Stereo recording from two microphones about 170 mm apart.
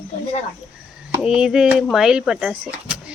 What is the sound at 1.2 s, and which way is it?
Speech, 5° right (ahead or behind).